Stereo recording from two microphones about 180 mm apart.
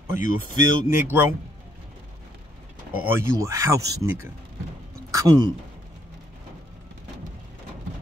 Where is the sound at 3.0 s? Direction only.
15° right (ahead or behind).